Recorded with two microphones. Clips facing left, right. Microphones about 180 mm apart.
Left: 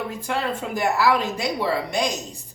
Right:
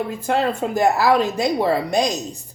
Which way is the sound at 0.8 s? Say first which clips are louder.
Right 4 dB; 40° right (ahead or behind).